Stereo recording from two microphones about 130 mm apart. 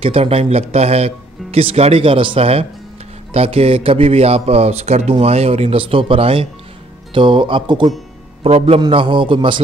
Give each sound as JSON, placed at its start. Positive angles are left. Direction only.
{"t": 0.0, "sound": "a man's voice", "side_deg": -45}
{"t": 8.5, "sound": "a man's voice", "side_deg": -50}